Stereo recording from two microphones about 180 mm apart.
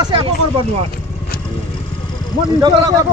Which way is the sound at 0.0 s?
25° right (ahead or behind).